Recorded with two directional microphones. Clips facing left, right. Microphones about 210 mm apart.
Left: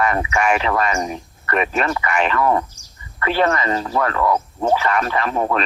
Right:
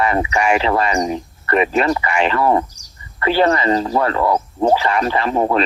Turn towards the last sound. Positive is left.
turn(degrees=-30)  # may be behind; listen again after turning